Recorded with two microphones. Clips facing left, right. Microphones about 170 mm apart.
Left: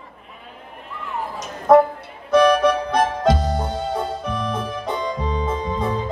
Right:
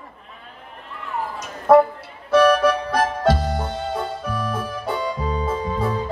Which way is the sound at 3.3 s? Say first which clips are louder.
Left 1 dB; 20° left (ahead or behind).